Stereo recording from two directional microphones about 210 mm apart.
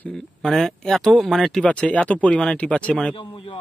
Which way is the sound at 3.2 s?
25° left (ahead or behind).